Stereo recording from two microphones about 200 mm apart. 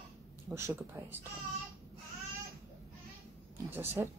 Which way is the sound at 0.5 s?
10° right (ahead or behind).